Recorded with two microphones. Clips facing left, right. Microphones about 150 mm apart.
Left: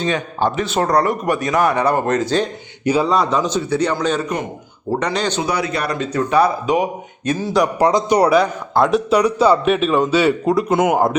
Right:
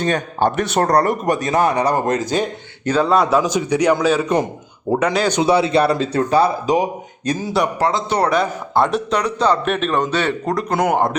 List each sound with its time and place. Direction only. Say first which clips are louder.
0.0 s speech: right 1 dB; 55° right (ahead or behind)
0.9 s speech: even; 40° right (ahead or behind)
1.5 s a man's voice: left 1 dB; 25° right (ahead or behind)
2.3 s a man's voice: left 1 dB; 10° right (ahead or behind)
2.8 s speech: left 1 dB; 10° left (ahead or behind)
3.1 s a man's voice: right 2 dB; 5° right (ahead or behind)
5.4 s a man's voice: right 6 dB; 25° right (ahead or behind)
7.8 s speech: left 4 dB; 15° left (ahead or behind)
8.4 s a man's voice: left 2 dB; centre (ahead or behind)